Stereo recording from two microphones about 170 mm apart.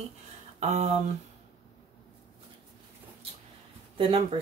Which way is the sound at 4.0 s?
35° right (ahead or behind).